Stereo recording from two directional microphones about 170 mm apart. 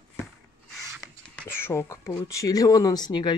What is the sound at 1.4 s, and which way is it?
Speech, 15° left (ahead or behind).